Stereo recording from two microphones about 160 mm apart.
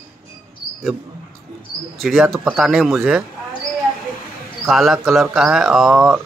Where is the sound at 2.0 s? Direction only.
Centre (ahead or behind).